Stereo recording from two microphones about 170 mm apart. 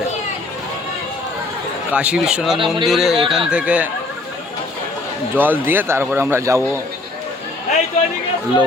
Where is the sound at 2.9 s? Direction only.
Centre (ahead or behind).